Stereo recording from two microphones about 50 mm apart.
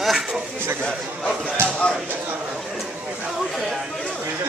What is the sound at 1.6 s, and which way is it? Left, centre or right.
Speech, right.